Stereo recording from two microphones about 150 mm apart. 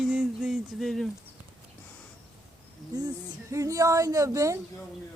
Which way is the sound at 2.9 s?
25° right (ahead or behind).